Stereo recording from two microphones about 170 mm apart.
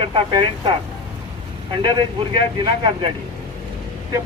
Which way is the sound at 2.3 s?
30° right (ahead or behind).